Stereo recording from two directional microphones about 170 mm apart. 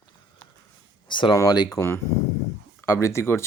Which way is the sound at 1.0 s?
30° left (ahead or behind).